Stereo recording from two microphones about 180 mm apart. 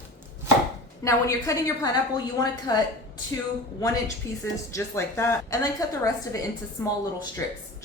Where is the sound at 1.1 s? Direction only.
20° left (ahead or behind).